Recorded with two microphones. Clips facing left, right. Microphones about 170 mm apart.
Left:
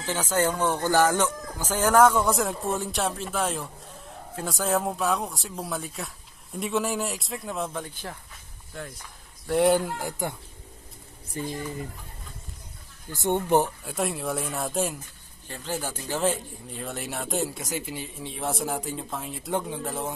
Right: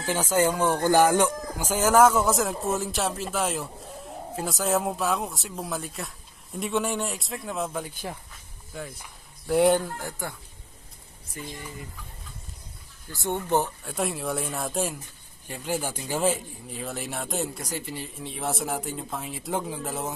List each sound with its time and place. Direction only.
0.0 s speech: 10° right (ahead or behind)
9.8 s speech: 10° left (ahead or behind)
11.4 s speech: 30° left (ahead or behind)
13.1 s speech: 20° left (ahead or behind)
13.8 s speech: centre (ahead or behind)
15.4 s speech: 10° right (ahead or behind)